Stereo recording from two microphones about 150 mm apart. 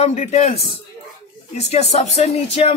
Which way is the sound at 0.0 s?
45° left (ahead or behind).